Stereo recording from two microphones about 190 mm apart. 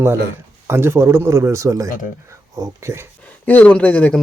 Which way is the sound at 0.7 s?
15° right (ahead or behind).